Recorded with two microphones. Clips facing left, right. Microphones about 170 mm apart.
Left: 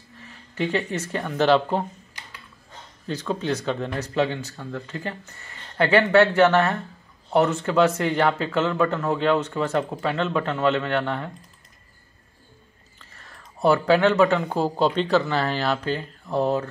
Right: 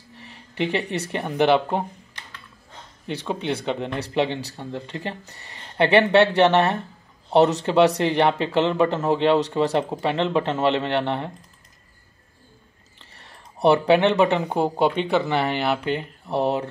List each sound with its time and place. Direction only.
0.2 s speech: 20° right (ahead or behind)
3.3 s speech: 20° right (ahead or behind)
13.0 s speech: 25° right (ahead or behind)